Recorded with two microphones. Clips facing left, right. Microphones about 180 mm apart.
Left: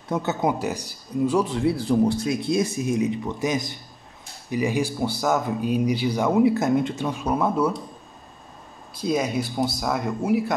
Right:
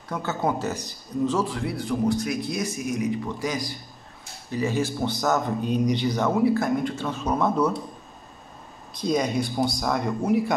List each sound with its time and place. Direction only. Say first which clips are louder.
0.1 s speech: left 3 dB; 20° left (ahead or behind)
9.0 s speech: even; 5° left (ahead or behind)